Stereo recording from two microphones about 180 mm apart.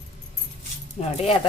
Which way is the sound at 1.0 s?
35° left (ahead or behind).